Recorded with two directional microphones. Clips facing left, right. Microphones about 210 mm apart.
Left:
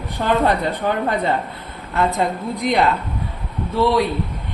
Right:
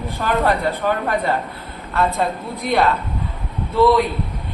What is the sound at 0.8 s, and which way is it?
Speech, 20° left (ahead or behind).